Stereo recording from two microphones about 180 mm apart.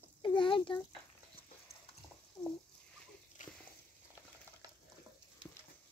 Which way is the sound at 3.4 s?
45° left (ahead or behind).